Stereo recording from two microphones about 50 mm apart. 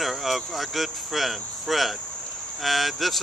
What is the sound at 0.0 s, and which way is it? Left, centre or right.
Speech, centre.